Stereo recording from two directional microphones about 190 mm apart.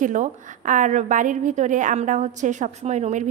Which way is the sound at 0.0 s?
40° right (ahead or behind).